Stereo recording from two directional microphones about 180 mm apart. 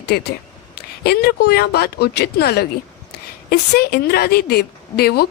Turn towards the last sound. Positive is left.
turn(degrees=60)  # may be behind; listen again after turning